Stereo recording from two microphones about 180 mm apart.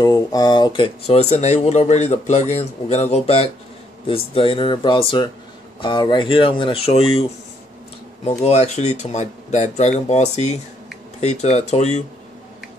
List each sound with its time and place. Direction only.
0.0 s speech: 20° left (ahead or behind); by 12.0 s 40° left (ahead or behind)